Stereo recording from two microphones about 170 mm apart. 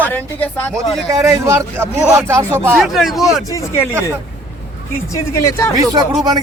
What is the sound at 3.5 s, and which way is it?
Speech, 20° left (ahead or behind).